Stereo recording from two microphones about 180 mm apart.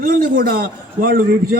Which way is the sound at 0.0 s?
55° right (ahead or behind).